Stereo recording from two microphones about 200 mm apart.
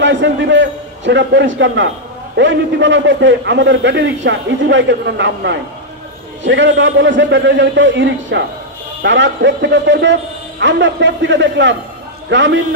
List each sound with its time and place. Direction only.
0.0 s a man's voice: 65° right (ahead or behind)